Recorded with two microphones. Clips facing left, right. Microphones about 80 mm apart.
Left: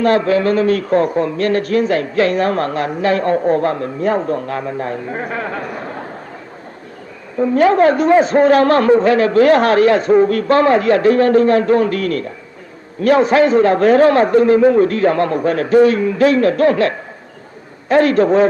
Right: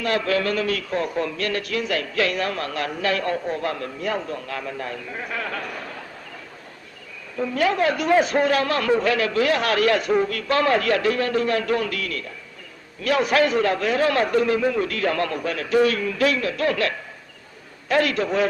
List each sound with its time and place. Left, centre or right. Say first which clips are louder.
0.0 s a man's voice: left 9 dB; left
7.3 s a man's voice: left 10 dB; left